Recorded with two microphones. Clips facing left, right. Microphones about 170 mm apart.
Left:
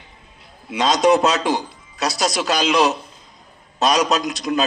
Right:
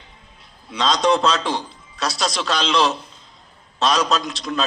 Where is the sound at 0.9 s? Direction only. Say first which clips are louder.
Left 3 dB; 20° left (ahead or behind).